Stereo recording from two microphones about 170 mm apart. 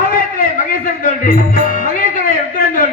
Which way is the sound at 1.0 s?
55° left (ahead or behind).